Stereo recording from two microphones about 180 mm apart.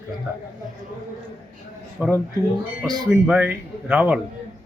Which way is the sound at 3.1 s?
5° right (ahead or behind).